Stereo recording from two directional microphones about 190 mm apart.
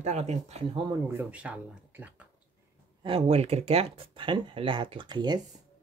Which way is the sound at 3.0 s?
30° right (ahead or behind).